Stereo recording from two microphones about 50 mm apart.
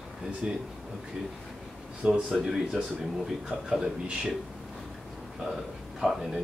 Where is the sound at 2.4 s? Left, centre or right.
Centre.